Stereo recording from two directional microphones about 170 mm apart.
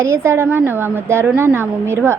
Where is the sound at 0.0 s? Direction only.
15° right (ahead or behind).